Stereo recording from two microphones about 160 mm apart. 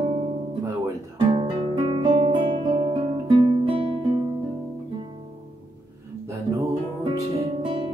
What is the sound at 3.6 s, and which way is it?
Music, 35° right (ahead or behind).